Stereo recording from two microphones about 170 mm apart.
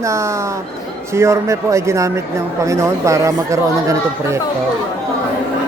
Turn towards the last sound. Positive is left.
turn(degrees=-20)  # may be behind; listen again after turning